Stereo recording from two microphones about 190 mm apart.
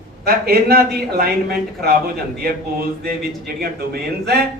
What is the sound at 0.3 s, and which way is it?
Speech, 55° right (ahead or behind).